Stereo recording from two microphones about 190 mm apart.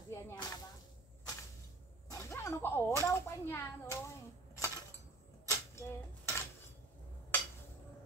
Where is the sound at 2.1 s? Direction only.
15° left (ahead or behind).